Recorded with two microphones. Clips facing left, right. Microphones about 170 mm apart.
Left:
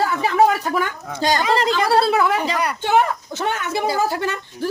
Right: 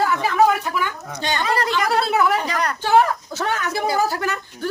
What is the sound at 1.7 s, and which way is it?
Speech, 30° left (ahead or behind).